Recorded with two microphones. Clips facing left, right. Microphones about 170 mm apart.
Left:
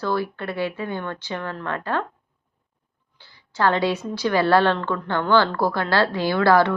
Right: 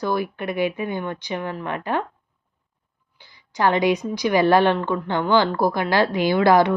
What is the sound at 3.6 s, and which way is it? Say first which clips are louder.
A woman's voice: right 2 dB; 15° right (ahead or behind).